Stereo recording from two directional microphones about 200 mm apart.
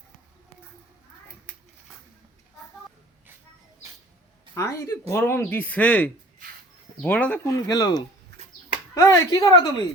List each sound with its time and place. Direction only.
4.5 s speech: 15° left (ahead or behind)